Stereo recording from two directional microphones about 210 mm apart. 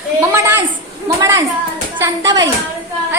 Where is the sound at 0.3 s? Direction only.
10° right (ahead or behind).